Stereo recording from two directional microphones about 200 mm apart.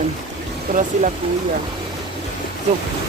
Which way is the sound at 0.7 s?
40° right (ahead or behind).